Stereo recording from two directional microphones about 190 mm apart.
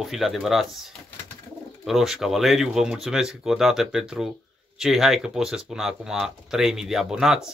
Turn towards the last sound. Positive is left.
turn(degrees=0)  # may be behind; listen again after turning